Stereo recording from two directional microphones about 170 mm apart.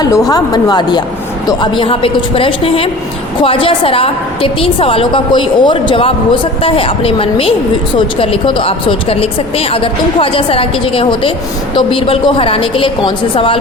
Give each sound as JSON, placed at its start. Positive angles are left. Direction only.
{"t": 0.0, "sound": "a woman's voice", "side_deg": 20}